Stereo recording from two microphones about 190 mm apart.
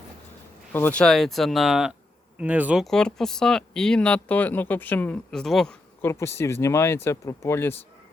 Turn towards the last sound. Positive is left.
turn(degrees=10)  # may be behind; listen again after turning